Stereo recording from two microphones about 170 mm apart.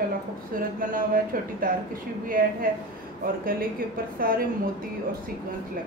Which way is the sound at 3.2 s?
60° right (ahead or behind).